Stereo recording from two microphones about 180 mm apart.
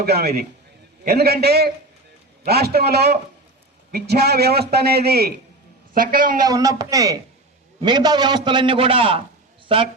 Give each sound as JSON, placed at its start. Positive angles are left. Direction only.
{"t": 0.0, "sound": "a man's voice", "side_deg": -60}
{"t": 6.4, "sound": "a man's voice", "side_deg": -20}